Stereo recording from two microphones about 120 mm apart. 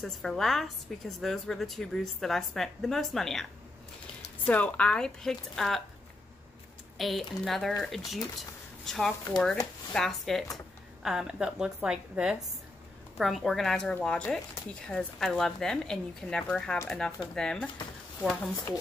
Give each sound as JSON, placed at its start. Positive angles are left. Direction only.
{"t": 0.0, "sound": "a woman's voice", "side_deg": 5}
{"t": 4.5, "sound": "speech", "side_deg": 10}
{"t": 7.0, "sound": "a woman's voice", "side_deg": 0}